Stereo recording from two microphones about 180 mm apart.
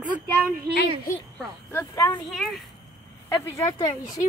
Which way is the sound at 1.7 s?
20° left (ahead or behind).